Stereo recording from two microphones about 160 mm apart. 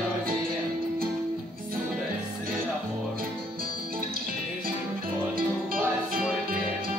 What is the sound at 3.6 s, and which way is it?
Music, 65° right (ahead or behind).